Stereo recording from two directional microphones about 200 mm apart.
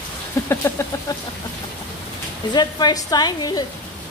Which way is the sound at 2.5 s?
20° left (ahead or behind).